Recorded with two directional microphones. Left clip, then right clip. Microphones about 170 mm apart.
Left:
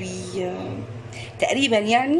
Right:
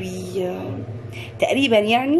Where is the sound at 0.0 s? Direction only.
Centre (ahead or behind).